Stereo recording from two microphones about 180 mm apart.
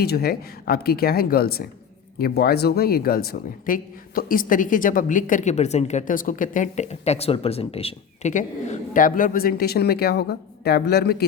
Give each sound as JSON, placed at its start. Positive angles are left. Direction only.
{"t": 0.0, "sound": "speech", "side_deg": 60}